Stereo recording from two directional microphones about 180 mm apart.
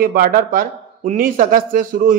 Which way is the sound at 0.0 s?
50° right (ahead or behind).